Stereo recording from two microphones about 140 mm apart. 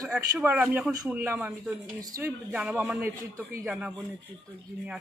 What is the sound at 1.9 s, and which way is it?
Speech, 25° right (ahead or behind).